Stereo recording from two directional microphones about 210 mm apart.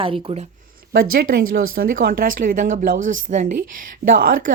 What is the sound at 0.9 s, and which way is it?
Speech, 45° right (ahead or behind).